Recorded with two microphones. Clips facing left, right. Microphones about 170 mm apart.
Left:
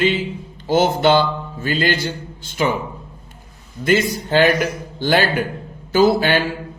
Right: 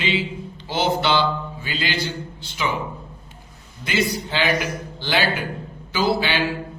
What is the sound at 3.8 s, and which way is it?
A man's voice, 50° left (ahead or behind).